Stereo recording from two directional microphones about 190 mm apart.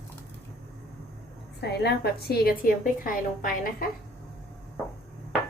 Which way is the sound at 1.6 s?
60° left (ahead or behind).